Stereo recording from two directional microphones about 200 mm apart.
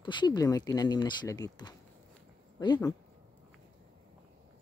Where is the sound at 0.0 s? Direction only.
20° left (ahead or behind).